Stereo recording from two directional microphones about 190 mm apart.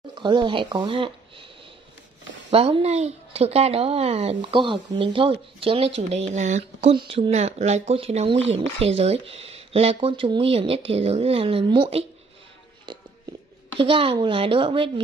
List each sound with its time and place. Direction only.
0.1 s speech: 25° right (ahead or behind)
2.5 s speech: 30° right (ahead or behind)
13.7 s speech: 30° right (ahead or behind)